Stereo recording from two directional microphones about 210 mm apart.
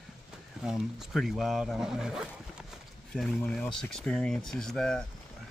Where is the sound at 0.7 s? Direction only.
Centre (ahead or behind).